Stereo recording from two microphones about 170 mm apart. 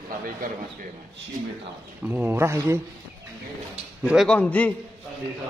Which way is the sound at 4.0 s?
Centre (ahead or behind).